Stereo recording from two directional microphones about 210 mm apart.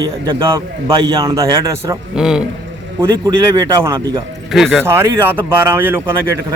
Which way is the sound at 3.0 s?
20° right (ahead or behind).